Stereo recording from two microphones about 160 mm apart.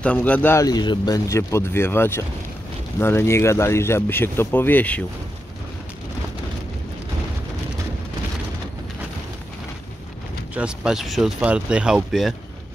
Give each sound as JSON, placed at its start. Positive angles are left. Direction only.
{"t": 0.0, "sound": "speech", "side_deg": 10}
{"t": 10.5, "sound": "speech", "side_deg": -5}